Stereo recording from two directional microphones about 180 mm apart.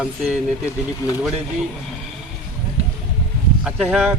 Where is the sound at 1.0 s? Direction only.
20° left (ahead or behind).